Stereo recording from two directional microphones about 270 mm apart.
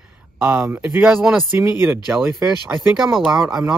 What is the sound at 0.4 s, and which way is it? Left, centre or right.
Speech, centre.